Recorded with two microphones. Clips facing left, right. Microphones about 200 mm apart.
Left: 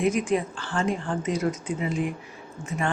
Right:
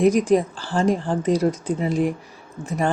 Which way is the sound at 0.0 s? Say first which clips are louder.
Right 7 dB; 35° right (ahead or behind).